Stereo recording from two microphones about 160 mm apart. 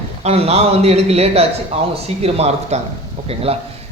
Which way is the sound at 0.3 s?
40° right (ahead or behind).